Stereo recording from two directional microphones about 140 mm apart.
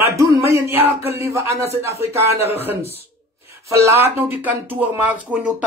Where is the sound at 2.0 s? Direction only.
20° right (ahead or behind).